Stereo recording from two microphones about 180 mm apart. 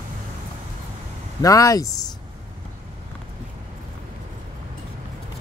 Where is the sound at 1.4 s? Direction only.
20° left (ahead or behind).